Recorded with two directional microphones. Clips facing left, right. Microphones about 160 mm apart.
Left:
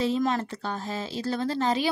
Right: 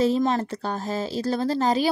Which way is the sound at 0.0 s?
35° right (ahead or behind).